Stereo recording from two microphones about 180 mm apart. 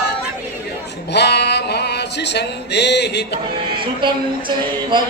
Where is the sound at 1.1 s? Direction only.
70° left (ahead or behind).